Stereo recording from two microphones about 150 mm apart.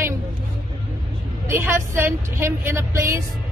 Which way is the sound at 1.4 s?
15° right (ahead or behind).